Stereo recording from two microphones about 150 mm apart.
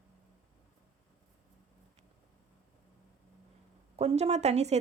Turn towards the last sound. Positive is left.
turn(degrees=-45)  # may be behind; listen again after turning